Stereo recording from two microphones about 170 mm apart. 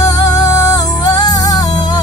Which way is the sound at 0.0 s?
20° left (ahead or behind).